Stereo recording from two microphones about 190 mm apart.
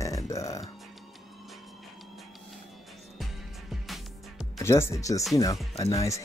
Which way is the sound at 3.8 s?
Centre (ahead or behind).